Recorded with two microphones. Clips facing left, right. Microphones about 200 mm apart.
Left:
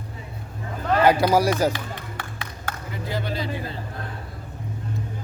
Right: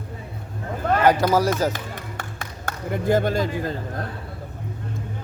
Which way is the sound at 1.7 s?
45° right (ahead or behind).